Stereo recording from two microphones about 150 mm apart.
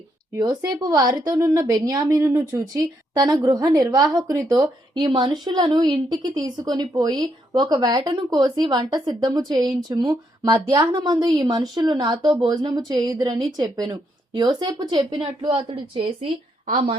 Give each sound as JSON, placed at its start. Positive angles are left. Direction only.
{"t": 0.3, "sound": "a woman's voice", "side_deg": -25}